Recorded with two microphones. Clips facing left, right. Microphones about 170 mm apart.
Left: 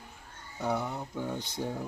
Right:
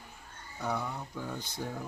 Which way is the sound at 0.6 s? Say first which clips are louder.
Left 3 dB; 20° left (ahead or behind).